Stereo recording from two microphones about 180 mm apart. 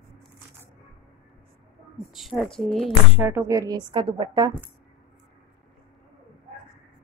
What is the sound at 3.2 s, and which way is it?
A woman's voice, 15° right (ahead or behind).